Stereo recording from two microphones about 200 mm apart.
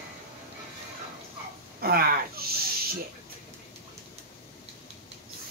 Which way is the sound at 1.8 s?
50° right (ahead or behind).